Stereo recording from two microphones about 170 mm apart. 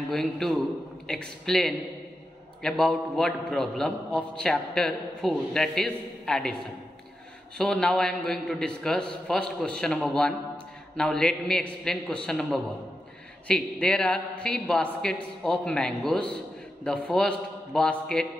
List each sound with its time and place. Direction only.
0.1 s a man's voice: 5° left (ahead or behind)
7.5 s a man's voice: 5° left (ahead or behind)